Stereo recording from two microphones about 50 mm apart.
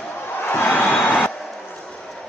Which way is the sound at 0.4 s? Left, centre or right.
Left.